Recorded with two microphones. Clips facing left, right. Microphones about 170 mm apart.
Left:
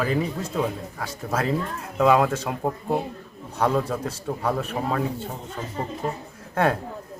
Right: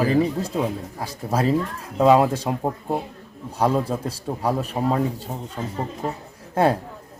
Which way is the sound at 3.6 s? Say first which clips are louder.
Right 2 dB; 30° right (ahead or behind).